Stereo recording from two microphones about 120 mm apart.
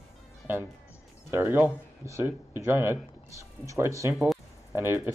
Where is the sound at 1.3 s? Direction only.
20° right (ahead or behind).